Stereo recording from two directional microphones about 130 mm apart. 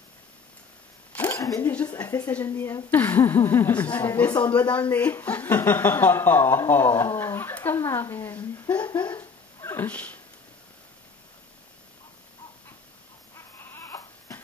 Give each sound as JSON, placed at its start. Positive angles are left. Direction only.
{"t": 1.1, "sound": "a sound", "side_deg": 15}
{"t": 1.6, "sound": "speech", "side_deg": 10}
{"t": 2.0, "sound": "speech", "side_deg": 30}
{"t": 2.3, "sound": "speech", "side_deg": 15}
{"t": 8.9, "sound": "a sound", "side_deg": 15}
{"t": 13.6, "sound": "crying", "side_deg": 20}